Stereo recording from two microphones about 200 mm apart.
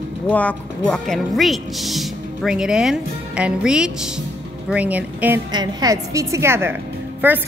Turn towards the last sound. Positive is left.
turn(degrees=-10)  # may be behind; listen again after turning